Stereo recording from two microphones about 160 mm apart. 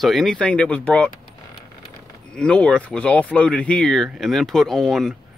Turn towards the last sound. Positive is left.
turn(degrees=5)  # may be behind; listen again after turning